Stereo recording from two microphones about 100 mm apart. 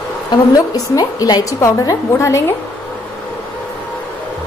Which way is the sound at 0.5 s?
35° left (ahead or behind).